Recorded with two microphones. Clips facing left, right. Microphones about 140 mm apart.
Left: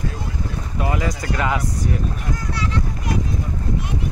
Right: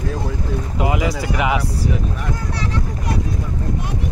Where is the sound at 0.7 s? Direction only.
15° right (ahead or behind).